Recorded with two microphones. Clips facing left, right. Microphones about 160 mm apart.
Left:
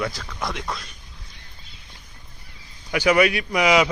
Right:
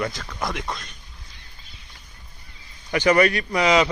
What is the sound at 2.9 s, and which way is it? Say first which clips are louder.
A man's voice: even; 5° left (ahead or behind).